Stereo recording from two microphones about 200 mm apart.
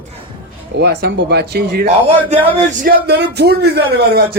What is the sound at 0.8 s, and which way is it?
A man's voice, 55° right (ahead or behind).